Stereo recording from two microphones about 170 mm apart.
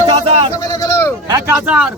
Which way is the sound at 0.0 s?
30° right (ahead or behind).